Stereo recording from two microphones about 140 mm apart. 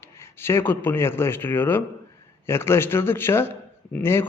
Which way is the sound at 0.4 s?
15° left (ahead or behind).